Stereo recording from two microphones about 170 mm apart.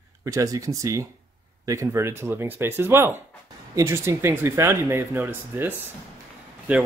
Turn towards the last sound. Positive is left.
turn(degrees=-10)  # may be behind; listen again after turning